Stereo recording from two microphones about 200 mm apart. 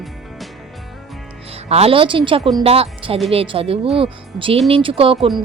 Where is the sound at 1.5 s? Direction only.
30° right (ahead or behind).